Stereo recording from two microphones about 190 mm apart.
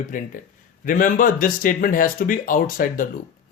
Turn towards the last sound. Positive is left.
turn(degrees=45)  # may be behind; listen again after turning